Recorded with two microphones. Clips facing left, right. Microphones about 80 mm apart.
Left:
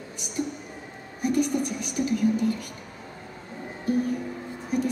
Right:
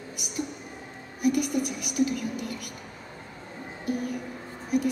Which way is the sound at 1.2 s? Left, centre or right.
Left.